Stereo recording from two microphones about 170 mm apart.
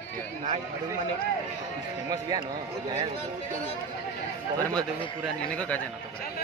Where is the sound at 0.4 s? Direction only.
45° right (ahead or behind).